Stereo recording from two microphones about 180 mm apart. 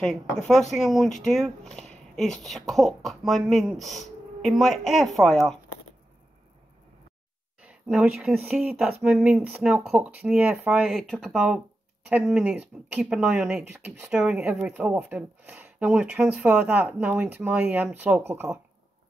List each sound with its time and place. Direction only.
0.5 s speech: centre (ahead or behind)
7.6 s speech: 5° right (ahead or behind)